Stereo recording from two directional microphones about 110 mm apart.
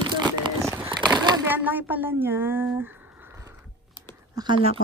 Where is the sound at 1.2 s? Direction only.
40° right (ahead or behind).